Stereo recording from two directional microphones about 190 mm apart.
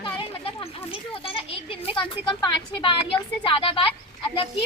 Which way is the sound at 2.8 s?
25° left (ahead or behind).